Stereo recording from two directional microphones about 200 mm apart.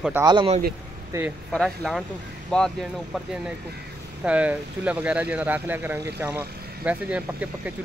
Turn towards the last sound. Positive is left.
turn(degrees=-5)  # may be behind; listen again after turning